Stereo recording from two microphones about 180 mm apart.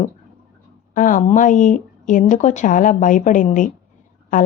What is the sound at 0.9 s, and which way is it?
A woman's voice, 45° left (ahead or behind).